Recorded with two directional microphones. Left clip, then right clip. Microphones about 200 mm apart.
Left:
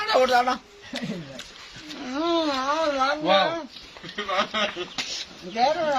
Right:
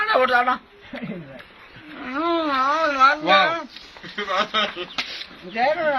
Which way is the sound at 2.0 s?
20° left (ahead or behind).